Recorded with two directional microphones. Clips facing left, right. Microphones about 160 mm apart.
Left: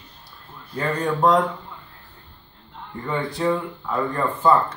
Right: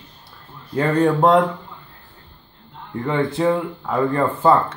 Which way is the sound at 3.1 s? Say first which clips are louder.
Right 4 dB; 25° right (ahead or behind).